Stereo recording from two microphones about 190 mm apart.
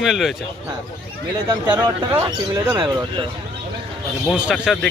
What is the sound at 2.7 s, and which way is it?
Speech, 20° right (ahead or behind).